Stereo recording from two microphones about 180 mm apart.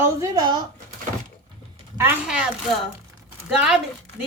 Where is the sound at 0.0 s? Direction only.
15° right (ahead or behind).